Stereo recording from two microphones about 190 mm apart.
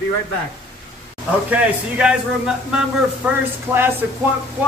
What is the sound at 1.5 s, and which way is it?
A man's voice, 5° right (ahead or behind).